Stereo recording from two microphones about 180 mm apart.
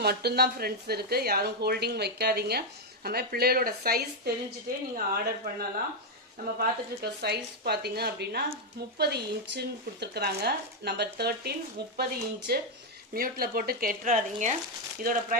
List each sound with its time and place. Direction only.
0.0 s speech: 60° right (ahead or behind)